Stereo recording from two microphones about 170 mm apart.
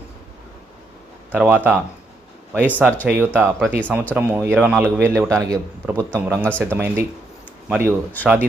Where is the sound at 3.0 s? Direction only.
10° right (ahead or behind).